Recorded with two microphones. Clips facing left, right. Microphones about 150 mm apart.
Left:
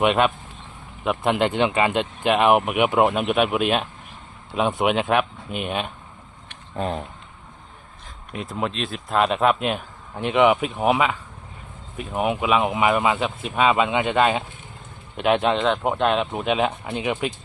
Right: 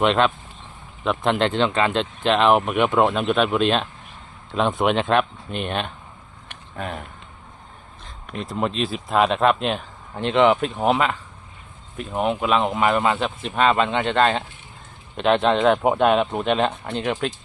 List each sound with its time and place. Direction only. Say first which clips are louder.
0.0 s speech: even; 10° left (ahead or behind)
6.7 s speech: left 4 dB; 30° left (ahead or behind)
8.3 s speech: right 2 dB; 5° left (ahead or behind)